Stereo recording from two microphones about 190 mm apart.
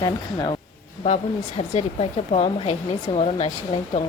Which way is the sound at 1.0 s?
30° left (ahead or behind).